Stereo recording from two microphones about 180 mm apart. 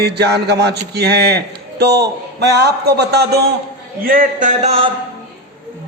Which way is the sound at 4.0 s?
50° right (ahead or behind).